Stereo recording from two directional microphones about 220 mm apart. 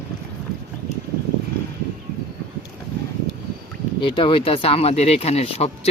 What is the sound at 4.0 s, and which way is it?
Speech, 20° left (ahead or behind).